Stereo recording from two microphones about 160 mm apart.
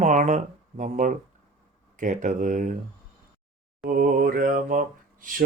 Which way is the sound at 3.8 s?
60° right (ahead or behind).